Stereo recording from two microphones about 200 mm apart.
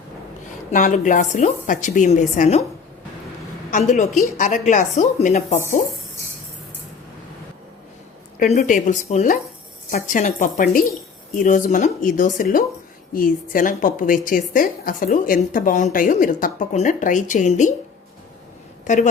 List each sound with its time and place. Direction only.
0.7 s a woman's voice: 40° left (ahead or behind)
3.7 s a woman's voice: 40° left (ahead or behind)
8.4 s a woman's voice: 40° left (ahead or behind)